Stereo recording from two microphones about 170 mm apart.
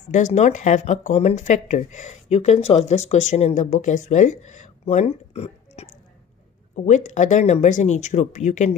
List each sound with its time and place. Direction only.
0.1 s speech: 45° left (ahead or behind)